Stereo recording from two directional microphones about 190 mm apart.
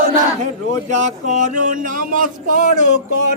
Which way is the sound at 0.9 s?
40° right (ahead or behind).